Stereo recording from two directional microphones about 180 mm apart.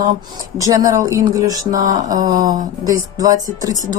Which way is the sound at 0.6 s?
20° right (ahead or behind).